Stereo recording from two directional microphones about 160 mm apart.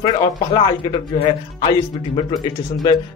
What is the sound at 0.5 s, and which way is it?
A man's voice, 35° left (ahead or behind).